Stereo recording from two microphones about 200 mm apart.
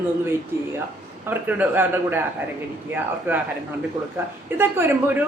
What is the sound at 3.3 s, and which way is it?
Speech, 10° right (ahead or behind).